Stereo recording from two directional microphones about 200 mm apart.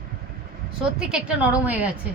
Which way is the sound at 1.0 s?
5° right (ahead or behind).